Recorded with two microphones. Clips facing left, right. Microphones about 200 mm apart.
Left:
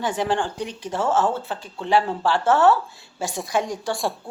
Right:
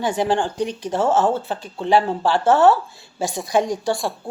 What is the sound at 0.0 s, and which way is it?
Speech, 10° right (ahead or behind).